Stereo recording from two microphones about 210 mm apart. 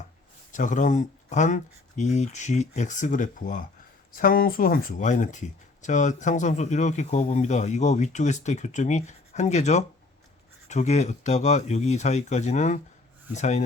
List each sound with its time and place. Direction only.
0.5 s speech: 35° left (ahead or behind)